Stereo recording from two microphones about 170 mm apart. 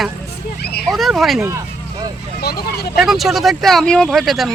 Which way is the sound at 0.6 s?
75° left (ahead or behind).